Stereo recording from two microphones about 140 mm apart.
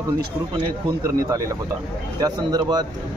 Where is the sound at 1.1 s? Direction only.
25° right (ahead or behind).